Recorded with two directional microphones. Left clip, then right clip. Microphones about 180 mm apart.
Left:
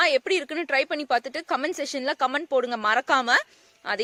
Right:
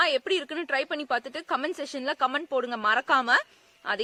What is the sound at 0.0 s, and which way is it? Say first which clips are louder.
A woman's voice: left 3 dB; 40° left (ahead or behind).